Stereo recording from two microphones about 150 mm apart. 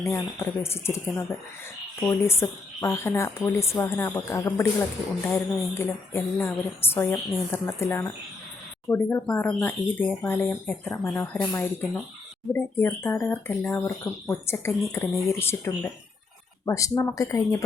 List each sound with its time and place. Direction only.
0.0 s a woman's voice: 20° left (ahead or behind)